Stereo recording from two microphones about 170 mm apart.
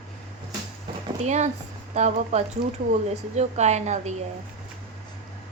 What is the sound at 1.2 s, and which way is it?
A woman's voice, 40° right (ahead or behind).